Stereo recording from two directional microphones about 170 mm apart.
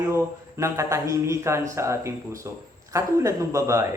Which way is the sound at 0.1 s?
15° right (ahead or behind).